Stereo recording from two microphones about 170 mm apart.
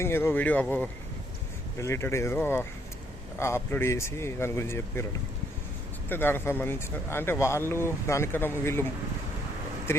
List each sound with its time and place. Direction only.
0.0 s speech: 15° left (ahead or behind)
6.1 s speech: 10° left (ahead or behind)